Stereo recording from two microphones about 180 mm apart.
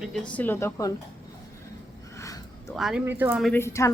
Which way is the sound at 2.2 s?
15° left (ahead or behind).